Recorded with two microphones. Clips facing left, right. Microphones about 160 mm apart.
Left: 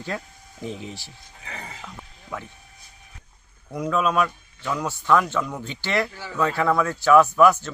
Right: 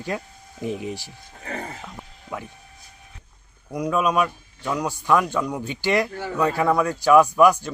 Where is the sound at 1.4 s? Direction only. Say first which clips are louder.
Right 7 dB; 50° right (ahead or behind).